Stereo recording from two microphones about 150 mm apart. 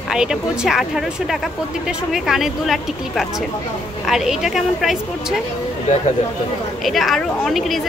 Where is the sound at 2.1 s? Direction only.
Centre (ahead or behind).